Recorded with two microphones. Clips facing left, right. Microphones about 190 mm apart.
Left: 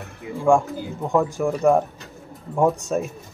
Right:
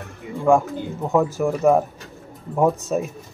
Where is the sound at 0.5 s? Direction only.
5° right (ahead or behind).